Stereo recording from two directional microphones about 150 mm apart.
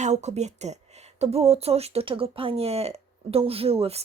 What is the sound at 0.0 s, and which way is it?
A woman's voice, 50° right (ahead or behind).